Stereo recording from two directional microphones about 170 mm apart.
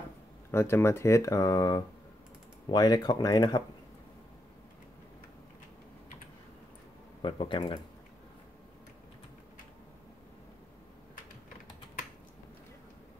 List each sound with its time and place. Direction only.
0.5 s speech: 15° left (ahead or behind)
7.2 s speech: 30° left (ahead or behind)